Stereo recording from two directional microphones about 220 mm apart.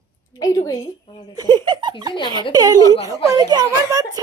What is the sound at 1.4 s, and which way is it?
Speech, 20° right (ahead or behind).